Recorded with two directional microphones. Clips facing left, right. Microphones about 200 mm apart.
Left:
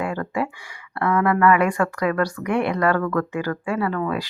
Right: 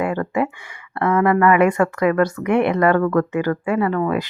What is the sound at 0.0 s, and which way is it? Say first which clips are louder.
Speech: right 4 dB; 20° right (ahead or behind).